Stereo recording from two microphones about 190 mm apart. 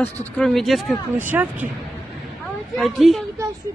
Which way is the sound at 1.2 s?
10° right (ahead or behind).